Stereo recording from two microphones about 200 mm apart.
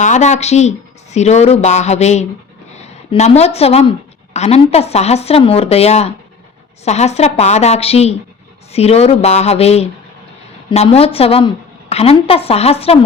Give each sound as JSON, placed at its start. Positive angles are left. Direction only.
{"t": 0.0, "sound": "a woman's voice", "side_deg": 35}